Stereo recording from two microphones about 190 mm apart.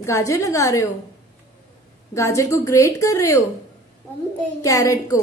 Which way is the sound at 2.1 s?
15° left (ahead or behind).